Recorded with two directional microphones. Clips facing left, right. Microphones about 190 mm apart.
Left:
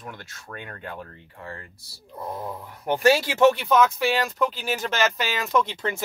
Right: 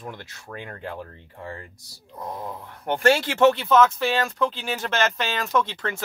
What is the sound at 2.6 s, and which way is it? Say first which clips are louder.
Speech: left 1 dB; 5° left (ahead or behind).